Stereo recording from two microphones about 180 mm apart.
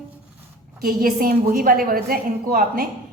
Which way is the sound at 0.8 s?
55° right (ahead or behind).